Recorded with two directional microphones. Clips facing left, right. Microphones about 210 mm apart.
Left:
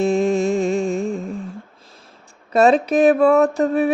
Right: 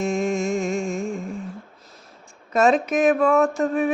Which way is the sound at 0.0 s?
35° left (ahead or behind).